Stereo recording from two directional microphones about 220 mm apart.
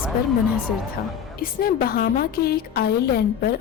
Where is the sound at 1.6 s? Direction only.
45° left (ahead or behind).